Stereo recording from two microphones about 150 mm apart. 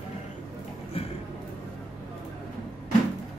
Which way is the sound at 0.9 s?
40° left (ahead or behind).